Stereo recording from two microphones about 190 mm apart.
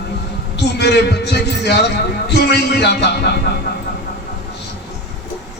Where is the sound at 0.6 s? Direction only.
60° left (ahead or behind).